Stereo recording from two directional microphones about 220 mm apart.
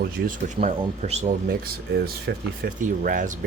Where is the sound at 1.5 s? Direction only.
45° right (ahead or behind).